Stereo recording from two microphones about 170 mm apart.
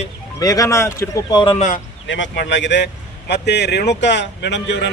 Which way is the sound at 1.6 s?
45° left (ahead or behind).